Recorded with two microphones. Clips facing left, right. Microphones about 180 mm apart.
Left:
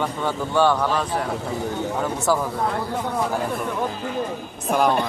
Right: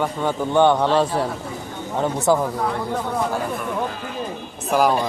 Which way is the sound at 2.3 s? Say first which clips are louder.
Right 3 dB; 20° right (ahead or behind).